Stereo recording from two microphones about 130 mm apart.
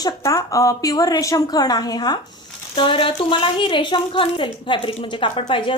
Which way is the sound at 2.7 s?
40° left (ahead or behind).